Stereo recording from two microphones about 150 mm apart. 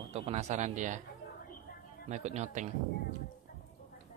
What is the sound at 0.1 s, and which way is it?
Speech, 45° right (ahead or behind).